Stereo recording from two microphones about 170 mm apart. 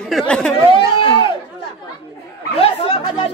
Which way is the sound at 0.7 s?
30° left (ahead or behind).